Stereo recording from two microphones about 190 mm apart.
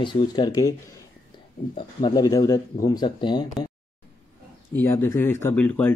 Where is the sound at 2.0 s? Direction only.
20° left (ahead or behind).